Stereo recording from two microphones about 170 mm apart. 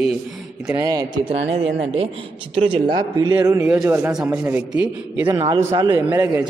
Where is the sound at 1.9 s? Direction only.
35° right (ahead or behind); by 4.8 s 10° right (ahead or behind).